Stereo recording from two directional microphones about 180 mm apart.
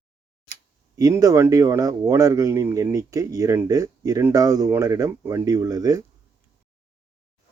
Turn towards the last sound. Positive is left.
turn(degrees=-20)  # may be behind; listen again after turning